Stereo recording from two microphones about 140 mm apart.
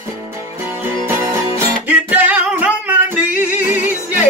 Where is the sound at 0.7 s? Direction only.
15° right (ahead or behind).